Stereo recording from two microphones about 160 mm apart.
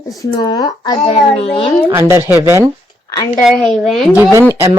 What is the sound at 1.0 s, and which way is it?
Speech, 35° left (ahead or behind).